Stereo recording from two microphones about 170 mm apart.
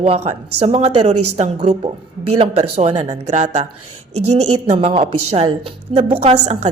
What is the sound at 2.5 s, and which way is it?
A woman's voice, 35° right (ahead or behind).